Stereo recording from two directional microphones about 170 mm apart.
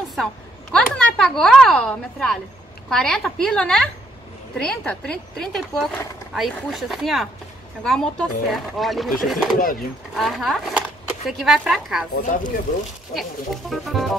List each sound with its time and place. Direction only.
0.1 s speech: 5° left (ahead or behind)
12.2 s speech: 50° left (ahead or behind)
13.1 s speech: centre (ahead or behind)